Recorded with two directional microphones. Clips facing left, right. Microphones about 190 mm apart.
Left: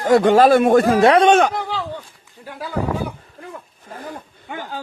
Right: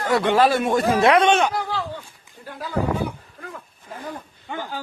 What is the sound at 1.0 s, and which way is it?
Speech, 35° left (ahead or behind).